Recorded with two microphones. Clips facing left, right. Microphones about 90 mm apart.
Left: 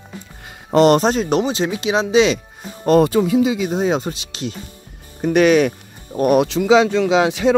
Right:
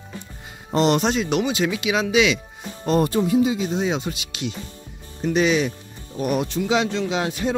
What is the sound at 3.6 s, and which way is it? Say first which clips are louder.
Speech: left 5 dB; 45° left (ahead or behind).